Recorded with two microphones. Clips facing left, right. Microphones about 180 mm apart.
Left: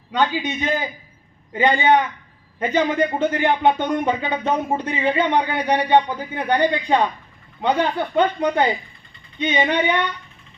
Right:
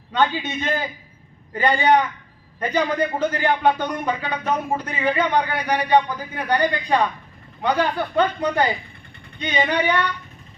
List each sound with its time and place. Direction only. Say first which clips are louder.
0.1 s a man's voice: even; 15° left (ahead or behind)